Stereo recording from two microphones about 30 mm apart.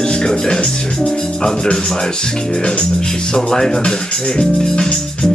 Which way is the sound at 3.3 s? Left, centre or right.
Left.